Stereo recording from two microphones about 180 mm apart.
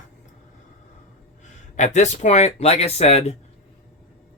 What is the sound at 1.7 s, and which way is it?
Speech, 40° left (ahead or behind).